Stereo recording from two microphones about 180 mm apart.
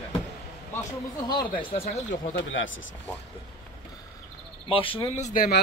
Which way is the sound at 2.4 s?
90° left.